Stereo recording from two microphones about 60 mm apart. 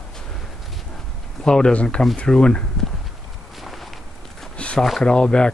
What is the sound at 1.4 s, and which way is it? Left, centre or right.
Speech, centre.